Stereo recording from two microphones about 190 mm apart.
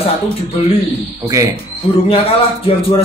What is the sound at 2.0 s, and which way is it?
Speech, 30° left (ahead or behind).